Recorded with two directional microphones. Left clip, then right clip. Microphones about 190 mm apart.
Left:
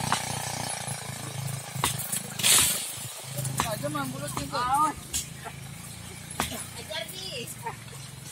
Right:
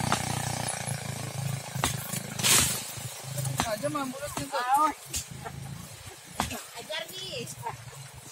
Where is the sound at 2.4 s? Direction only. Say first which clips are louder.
Left 1 dB; 45° right (ahead or behind).